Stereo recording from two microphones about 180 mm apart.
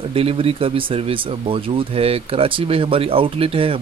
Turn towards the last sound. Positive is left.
turn(degrees=-30)  # may be behind; listen again after turning